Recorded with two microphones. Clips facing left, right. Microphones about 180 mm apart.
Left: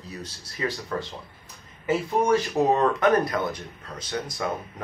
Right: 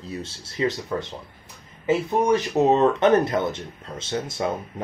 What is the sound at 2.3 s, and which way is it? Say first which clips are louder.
Speech: right 3 dB; 20° right (ahead or behind).